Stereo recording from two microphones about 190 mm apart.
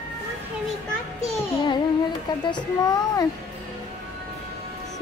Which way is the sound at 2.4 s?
20° left (ahead or behind).